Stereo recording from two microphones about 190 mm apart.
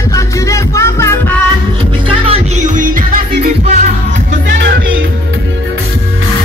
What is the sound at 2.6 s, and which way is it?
Music, 45° right (ahead or behind).